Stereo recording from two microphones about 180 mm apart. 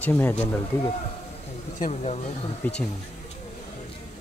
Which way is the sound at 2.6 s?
10° left (ahead or behind).